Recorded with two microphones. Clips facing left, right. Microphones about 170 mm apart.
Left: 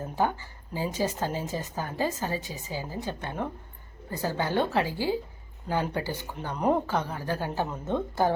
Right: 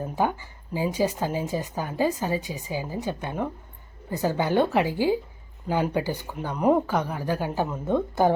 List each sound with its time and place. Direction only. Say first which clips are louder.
0.0 s speech: right 2 dB; 15° right (ahead or behind)